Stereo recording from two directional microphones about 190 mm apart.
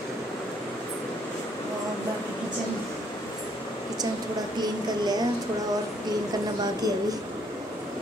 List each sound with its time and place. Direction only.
4.6 s speech: 20° right (ahead or behind)